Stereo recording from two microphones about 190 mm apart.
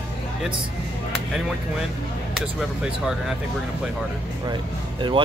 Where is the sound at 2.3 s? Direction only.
5° right (ahead or behind).